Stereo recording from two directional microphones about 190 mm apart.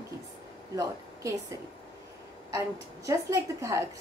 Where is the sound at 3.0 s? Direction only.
15° right (ahead or behind).